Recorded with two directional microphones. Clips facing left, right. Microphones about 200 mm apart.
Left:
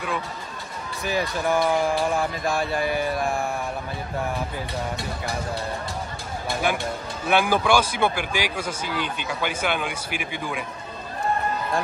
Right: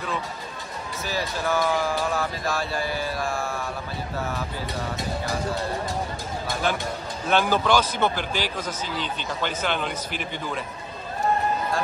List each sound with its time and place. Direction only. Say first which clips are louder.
1.1 s a man's voice: left 3 dB; 15° left (ahead or behind)
6.7 s a man's voice: left 1 dB; 10° left (ahead or behind)